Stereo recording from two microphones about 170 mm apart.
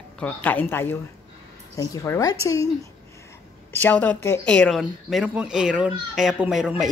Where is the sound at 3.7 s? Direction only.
10° left (ahead or behind).